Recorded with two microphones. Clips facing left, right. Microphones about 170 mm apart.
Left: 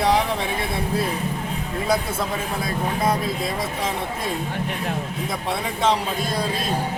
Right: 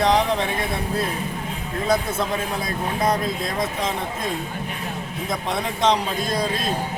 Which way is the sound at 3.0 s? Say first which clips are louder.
Right 2 dB; 5° left (ahead or behind).